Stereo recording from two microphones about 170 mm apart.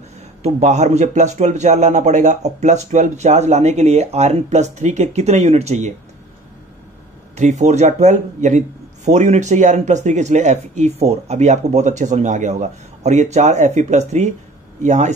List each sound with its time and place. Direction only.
0.4 s speech: 40° right (ahead or behind)
7.3 s speech: 45° right (ahead or behind)